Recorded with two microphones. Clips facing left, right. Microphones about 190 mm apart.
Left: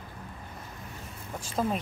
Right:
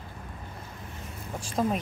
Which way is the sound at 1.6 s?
10° right (ahead or behind).